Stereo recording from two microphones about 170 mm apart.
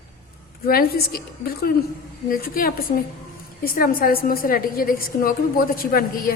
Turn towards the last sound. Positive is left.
turn(degrees=60)  # may be behind; listen again after turning